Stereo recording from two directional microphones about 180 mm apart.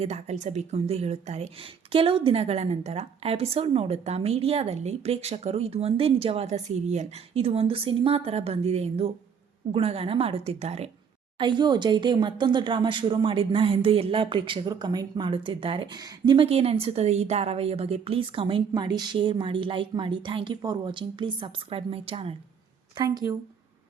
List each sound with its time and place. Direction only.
0.0 s a woman's voice: 35° right (ahead or behind)
11.3 s speech: 25° right (ahead or behind)
23.0 s speech: 20° right (ahead or behind)